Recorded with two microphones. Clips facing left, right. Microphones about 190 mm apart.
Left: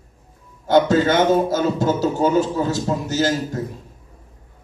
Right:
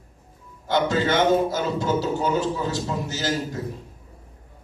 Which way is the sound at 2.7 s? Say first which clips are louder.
Left 5 dB; 45° left (ahead or behind).